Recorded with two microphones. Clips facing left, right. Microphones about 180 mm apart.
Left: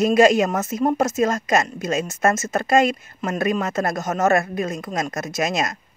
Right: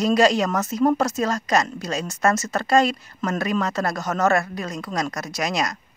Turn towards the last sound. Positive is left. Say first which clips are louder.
# left 2 dB
turn(degrees=25)  # may be behind; listen again after turning